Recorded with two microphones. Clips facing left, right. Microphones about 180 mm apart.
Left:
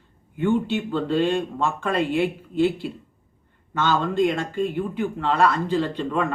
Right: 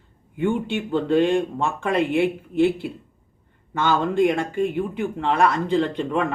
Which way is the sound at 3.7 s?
15° right (ahead or behind).